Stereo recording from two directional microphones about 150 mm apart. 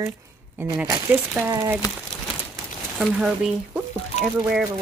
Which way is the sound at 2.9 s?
5° right (ahead or behind).